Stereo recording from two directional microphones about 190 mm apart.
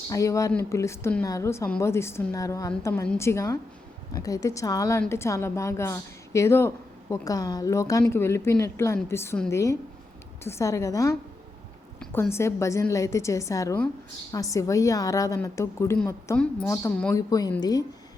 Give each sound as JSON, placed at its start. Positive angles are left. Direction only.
{"t": 0.1, "sound": "a woman's voice", "side_deg": 15}